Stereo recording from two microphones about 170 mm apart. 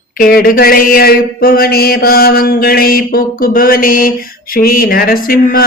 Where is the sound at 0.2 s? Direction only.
60° left (ahead or behind).